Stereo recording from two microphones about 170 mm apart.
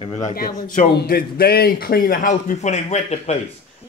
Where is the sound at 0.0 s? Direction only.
40° left (ahead or behind).